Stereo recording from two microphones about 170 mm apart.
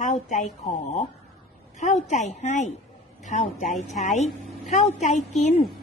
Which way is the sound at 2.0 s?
45° left (ahead or behind).